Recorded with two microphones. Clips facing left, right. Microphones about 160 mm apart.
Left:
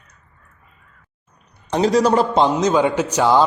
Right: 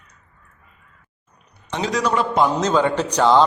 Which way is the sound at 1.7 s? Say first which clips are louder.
Left 6 dB; 35° left (ahead or behind).